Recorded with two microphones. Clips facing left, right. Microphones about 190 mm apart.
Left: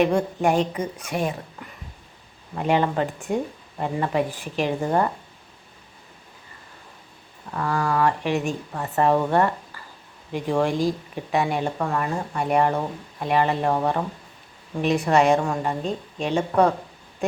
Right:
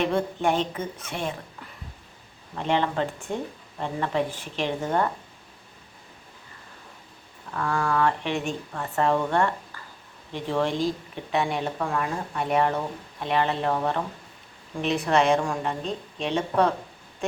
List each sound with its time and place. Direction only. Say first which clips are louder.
0.4 s speech: left 4 dB; 5° left (ahead or behind)
2.6 s a woman's voice: left 3 dB; 10° left (ahead or behind)
4.8 s speech: left 3 dB; 15° left (ahead or behind)
7.5 s speech: left 2 dB; 5° left (ahead or behind)
8.7 s a woman's voice: left 3 dB; 15° left (ahead or behind)